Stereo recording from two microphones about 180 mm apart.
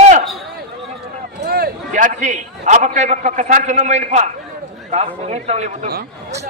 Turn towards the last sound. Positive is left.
turn(degrees=-40)  # may be behind; listen again after turning